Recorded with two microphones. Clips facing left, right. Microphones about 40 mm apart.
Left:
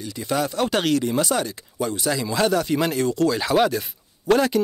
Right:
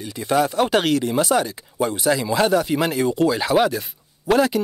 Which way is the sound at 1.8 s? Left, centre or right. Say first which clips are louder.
Right 4 dB; right.